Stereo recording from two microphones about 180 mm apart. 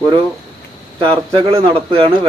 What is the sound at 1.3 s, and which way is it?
Speech, 30° right (ahead or behind).